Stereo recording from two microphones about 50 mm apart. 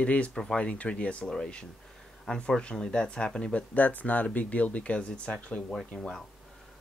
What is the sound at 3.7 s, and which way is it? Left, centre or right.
Speech, left.